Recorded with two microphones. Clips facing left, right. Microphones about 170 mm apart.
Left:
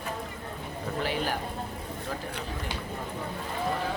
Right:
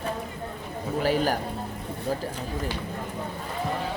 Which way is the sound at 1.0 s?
40° right (ahead or behind).